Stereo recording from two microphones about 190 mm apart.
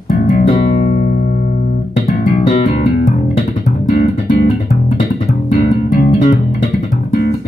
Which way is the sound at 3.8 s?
40° left (ahead or behind).